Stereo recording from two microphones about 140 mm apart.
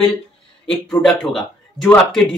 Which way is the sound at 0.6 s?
5° left (ahead or behind).